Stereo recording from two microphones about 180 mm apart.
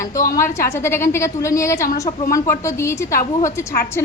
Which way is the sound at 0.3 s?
15° left (ahead or behind).